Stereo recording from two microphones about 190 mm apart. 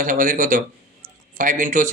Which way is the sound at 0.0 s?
45° right (ahead or behind).